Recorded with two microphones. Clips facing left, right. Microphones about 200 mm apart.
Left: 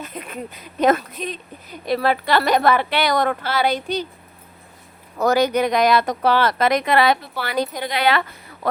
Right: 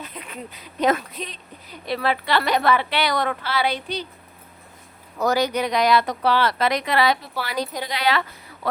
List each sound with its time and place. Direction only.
0.0 s a woman's voice: 45° left (ahead or behind)
5.2 s a woman's voice: 50° left (ahead or behind)